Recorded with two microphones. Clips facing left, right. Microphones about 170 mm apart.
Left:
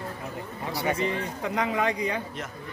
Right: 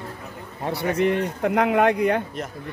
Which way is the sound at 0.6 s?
60° right (ahead or behind).